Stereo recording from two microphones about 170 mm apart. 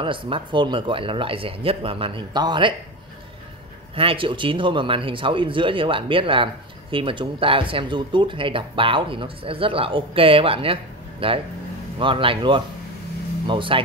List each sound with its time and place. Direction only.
0.0 s speech: 30° right (ahead or behind)
3.9 s speech: 30° right (ahead or behind)